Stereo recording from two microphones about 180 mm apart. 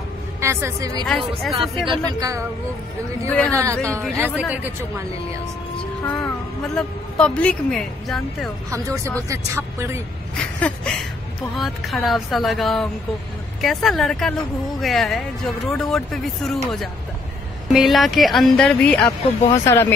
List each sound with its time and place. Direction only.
0.4 s speech: 15° right (ahead or behind)
1.0 s a woman's voice: centre (ahead or behind)
1.9 s speech: 20° right (ahead or behind)
3.3 s speech: 10° left (ahead or behind)
3.5 s speech: 15° right (ahead or behind)
6.2 s a woman's voice: 5° left (ahead or behind)
8.6 s speech: 15° right (ahead or behind)
10.3 s a sound: 5° left (ahead or behind)
11.5 s a woman's voice: centre (ahead or behind)
17.6 s a woman's voice: centre (ahead or behind)